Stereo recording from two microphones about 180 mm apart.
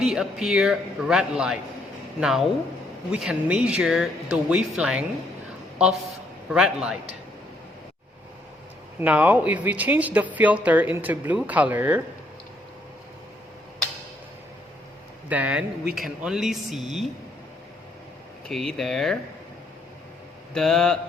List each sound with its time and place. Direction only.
0.0 s speech: centre (ahead or behind)
6.5 s speech: 5° right (ahead or behind)
9.0 s speech: 10° right (ahead or behind)
15.3 s speech: 5° right (ahead or behind)
18.4 s speech: 5° left (ahead or behind)
20.5 s speech: 5° left (ahead or behind)